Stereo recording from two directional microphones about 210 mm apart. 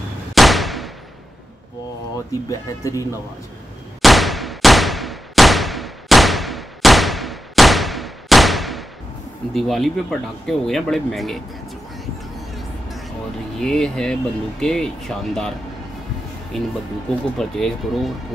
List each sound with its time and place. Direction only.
0.3 s a sound: centre (ahead or behind)
2.8 s speech: 15° left (ahead or behind)
4.0 s a sound: centre (ahead or behind)
9.5 s speech: centre (ahead or behind)
13.6 s speech: centre (ahead or behind)
16.5 s speech: centre (ahead or behind)